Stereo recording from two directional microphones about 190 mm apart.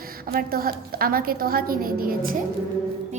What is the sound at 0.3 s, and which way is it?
A woman's voice, 50° right (ahead or behind).